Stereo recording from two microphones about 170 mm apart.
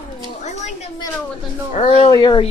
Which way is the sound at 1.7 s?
40° left (ahead or behind).